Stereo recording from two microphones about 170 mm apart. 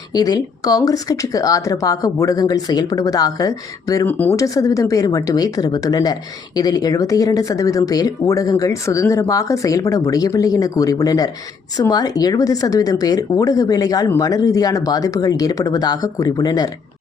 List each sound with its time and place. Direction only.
0.1 s speech: 20° left (ahead or behind)